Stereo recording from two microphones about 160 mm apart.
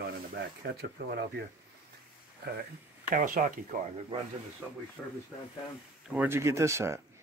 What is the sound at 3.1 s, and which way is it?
Speech, 60° right (ahead or behind).